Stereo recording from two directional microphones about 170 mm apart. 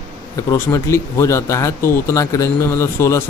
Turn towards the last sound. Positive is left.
turn(degrees=15)  # may be behind; listen again after turning